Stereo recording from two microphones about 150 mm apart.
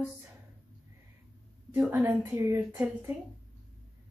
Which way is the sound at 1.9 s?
15° right (ahead or behind).